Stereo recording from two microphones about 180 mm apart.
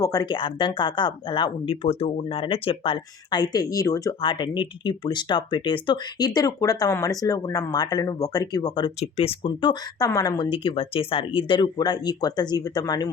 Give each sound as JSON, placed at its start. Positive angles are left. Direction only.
{"t": 0.0, "sound": "speech", "side_deg": 20}